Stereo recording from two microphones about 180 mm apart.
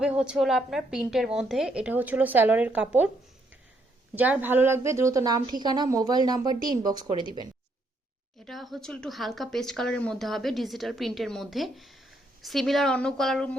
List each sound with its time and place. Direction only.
0.0 s speech: 5° right (ahead or behind)
4.1 s a woman's voice: 10° right (ahead or behind)
8.4 s speech: centre (ahead or behind)